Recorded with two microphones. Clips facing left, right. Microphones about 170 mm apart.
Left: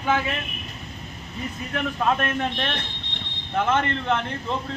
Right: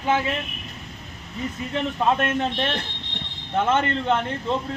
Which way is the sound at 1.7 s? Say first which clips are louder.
Right 1 dB; 20° right (ahead or behind).